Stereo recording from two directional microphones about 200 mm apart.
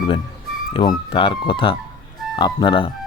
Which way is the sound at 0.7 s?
25° left (ahead or behind).